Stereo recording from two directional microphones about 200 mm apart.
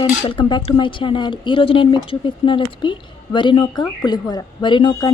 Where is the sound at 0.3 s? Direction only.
25° left (ahead or behind).